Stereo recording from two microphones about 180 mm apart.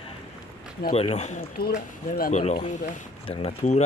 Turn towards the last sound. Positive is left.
turn(degrees=40)  # may be behind; listen again after turning